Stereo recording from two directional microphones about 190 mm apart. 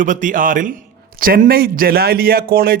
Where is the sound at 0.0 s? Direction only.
45° right (ahead or behind).